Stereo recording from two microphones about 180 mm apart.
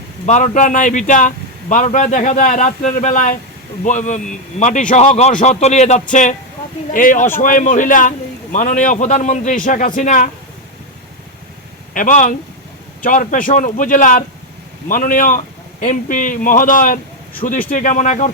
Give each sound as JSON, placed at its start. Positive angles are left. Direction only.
{"t": 0.3, "sound": "a man's voice", "side_deg": 40}
{"t": 11.9, "sound": "a man's voice", "side_deg": 45}